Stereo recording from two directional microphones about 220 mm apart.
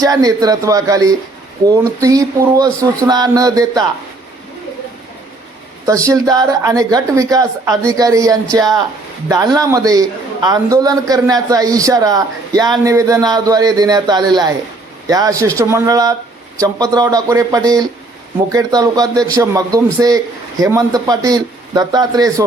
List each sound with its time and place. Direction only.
0.0 s a man's voice: 15° right (ahead or behind)
5.8 s a man's voice: 15° right (ahead or behind)